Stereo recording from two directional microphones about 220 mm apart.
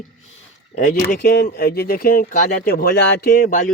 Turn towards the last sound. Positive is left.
turn(degrees=40)  # may be behind; listen again after turning